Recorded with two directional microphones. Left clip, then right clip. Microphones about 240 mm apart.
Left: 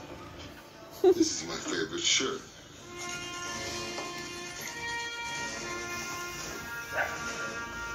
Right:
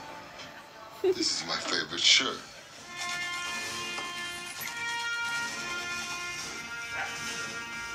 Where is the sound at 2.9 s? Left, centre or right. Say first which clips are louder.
Right 5 dB; right.